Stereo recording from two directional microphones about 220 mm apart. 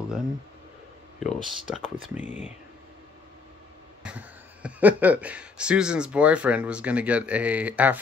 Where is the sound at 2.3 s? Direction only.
30° left (ahead or behind).